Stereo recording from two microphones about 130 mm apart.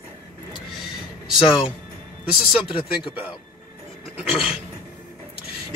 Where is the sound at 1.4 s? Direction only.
40° left (ahead or behind).